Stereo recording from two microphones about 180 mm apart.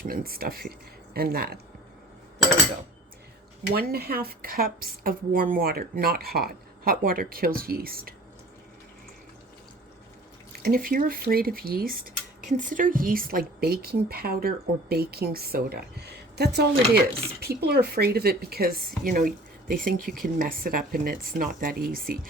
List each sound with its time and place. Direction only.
0.0 s dishes: 55° right (ahead or behind)
3.7 s dishes: 60° right (ahead or behind)
10.6 s dishes: 55° right (ahead or behind)
19.7 s speech: 50° right (ahead or behind)